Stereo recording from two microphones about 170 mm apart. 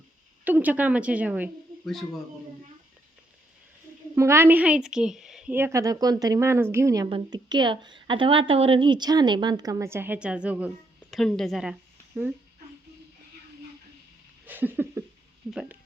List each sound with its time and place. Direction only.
0.4 s a woman's voice: 10° right (ahead or behind)
4.1 s a woman's voice: 15° right (ahead or behind)
14.4 s a sound: 10° right (ahead or behind)
15.4 s speech: 5° right (ahead or behind)